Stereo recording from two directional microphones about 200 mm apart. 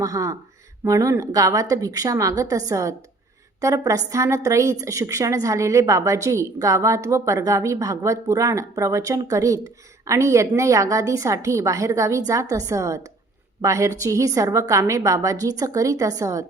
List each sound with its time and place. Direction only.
0.0 s a woman's voice: 15° right (ahead or behind)